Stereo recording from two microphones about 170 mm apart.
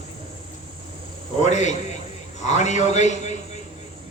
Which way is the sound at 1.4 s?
45° left (ahead or behind).